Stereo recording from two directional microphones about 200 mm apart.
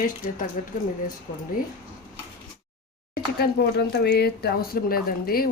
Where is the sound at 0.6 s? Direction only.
40° left (ahead or behind).